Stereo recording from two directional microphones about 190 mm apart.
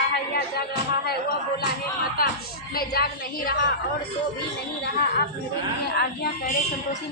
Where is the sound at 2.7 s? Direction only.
55° left (ahead or behind).